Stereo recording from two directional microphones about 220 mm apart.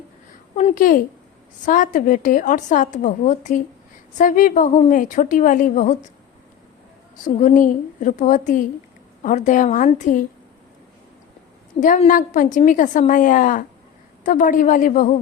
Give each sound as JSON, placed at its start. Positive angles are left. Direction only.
{"t": 0.5, "sound": "a woman's voice", "side_deg": 35}
{"t": 7.3, "sound": "a woman's voice", "side_deg": 35}
{"t": 11.8, "sound": "a woman's voice", "side_deg": 35}